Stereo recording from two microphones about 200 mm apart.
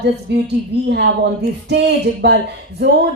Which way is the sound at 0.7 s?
55° right (ahead or behind).